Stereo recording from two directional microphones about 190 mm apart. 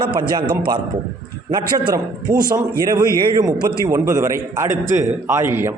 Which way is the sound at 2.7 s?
20° right (ahead or behind).